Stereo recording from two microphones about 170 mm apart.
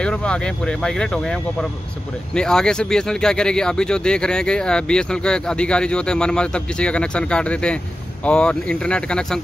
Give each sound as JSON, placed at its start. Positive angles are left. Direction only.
{"t": 0.0, "sound": "speech", "side_deg": 5}